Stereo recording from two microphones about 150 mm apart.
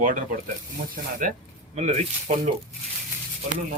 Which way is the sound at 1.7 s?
50° right (ahead or behind).